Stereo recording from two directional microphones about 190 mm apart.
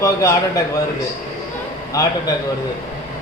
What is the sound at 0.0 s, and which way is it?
Speech, 15° left (ahead or behind).